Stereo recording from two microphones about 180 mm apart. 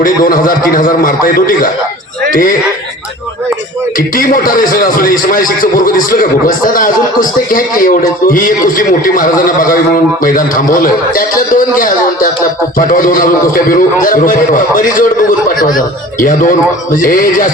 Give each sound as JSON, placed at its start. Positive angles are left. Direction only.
{"t": 0.0, "sound": "a man's voice", "side_deg": 50}
{"t": 3.9, "sound": "a man's voice", "side_deg": 50}
{"t": 16.2, "sound": "a man's voice", "side_deg": 45}